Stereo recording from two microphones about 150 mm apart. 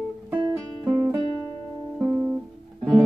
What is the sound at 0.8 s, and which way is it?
Music, 10° right (ahead or behind).